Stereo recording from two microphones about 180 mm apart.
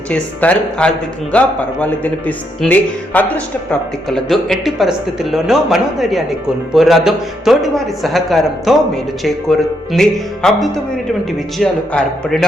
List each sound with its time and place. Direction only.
0.1 s a man's voice: 5° left (ahead or behind)